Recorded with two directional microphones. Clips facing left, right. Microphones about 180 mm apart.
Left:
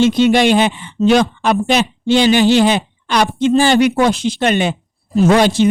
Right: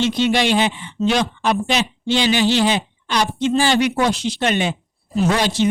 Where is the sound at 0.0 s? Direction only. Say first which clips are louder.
Left 6 dB; 50° left (ahead or behind).